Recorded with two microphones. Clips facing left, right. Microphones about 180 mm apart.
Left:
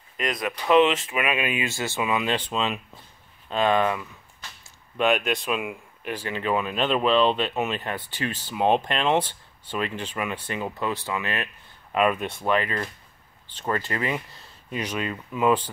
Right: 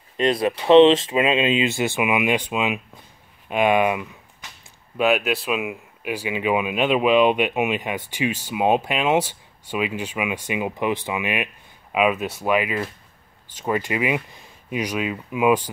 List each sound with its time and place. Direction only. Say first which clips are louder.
0.2 s speech: right 8 dB; 30° right (ahead or behind)
4.9 s speech: right 3 dB; 5° right (ahead or behind)